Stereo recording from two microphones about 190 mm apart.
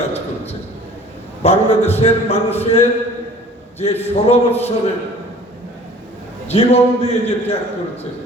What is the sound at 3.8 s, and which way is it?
Speech, 35° left (ahead or behind).